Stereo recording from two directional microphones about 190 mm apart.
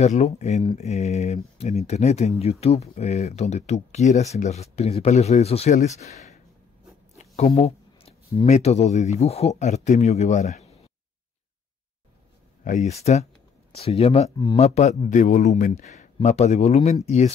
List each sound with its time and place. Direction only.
0.0 s speech: 35° left (ahead or behind)
12.6 s speech: 40° left (ahead or behind)